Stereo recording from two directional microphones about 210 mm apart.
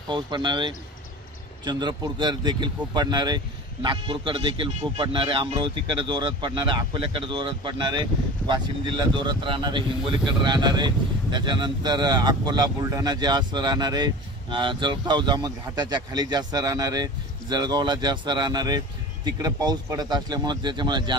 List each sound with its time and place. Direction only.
0.1 s speech: 20° right (ahead or behind)